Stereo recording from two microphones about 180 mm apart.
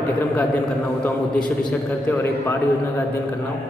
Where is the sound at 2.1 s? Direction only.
15° left (ahead or behind).